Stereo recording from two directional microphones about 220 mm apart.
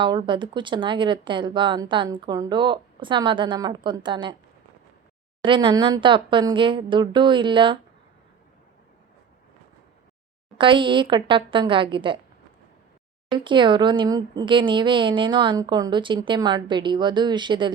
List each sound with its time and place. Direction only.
0.0 s speech: 20° right (ahead or behind)
5.4 s speech: 20° right (ahead or behind)
10.6 s speech: 20° right (ahead or behind)
13.3 s speech: 20° right (ahead or behind)